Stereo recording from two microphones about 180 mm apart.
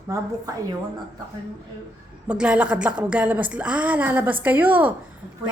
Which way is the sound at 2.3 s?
5° right (ahead or behind).